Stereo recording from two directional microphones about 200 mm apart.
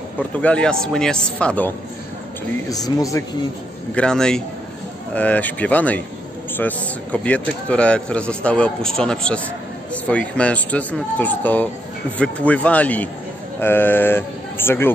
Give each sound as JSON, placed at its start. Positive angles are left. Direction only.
{"t": 0.4, "sound": "a man's voice", "side_deg": 5}
{"t": 2.7, "sound": "speech", "side_deg": 15}
{"t": 3.9, "sound": "a man's voice", "side_deg": 5}